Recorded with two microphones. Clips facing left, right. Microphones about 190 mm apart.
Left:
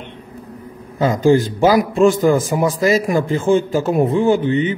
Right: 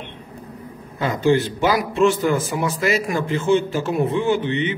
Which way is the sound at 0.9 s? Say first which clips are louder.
Left 5 dB; 40° left (ahead or behind).